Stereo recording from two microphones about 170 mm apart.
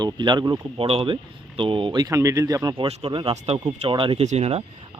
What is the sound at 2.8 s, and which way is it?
Speech, 35° right (ahead or behind).